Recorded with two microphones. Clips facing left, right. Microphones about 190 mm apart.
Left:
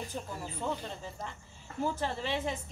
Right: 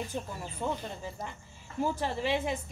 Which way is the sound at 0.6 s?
10° right (ahead or behind).